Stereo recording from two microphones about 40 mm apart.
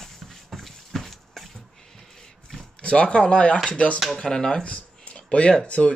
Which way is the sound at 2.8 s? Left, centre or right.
Left.